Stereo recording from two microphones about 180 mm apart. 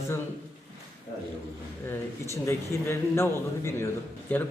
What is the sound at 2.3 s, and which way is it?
A man's voice, 15° left (ahead or behind).